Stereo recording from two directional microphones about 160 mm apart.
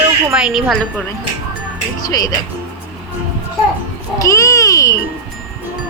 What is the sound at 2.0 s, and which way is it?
Speech, 25° left (ahead or behind).